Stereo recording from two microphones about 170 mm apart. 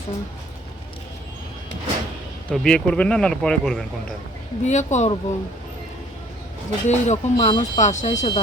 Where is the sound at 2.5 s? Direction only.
5° left (ahead or behind).